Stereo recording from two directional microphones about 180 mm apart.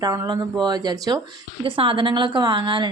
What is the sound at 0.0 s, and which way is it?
Speech, 20° right (ahead or behind).